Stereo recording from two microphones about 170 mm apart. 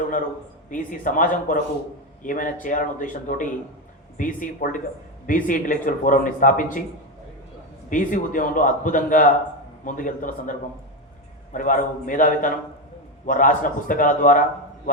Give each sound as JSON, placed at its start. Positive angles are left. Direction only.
{"t": 0.7, "sound": "speech", "side_deg": 50}
{"t": 7.9, "sound": "speech", "side_deg": 50}
{"t": 11.5, "sound": "speech", "side_deg": 50}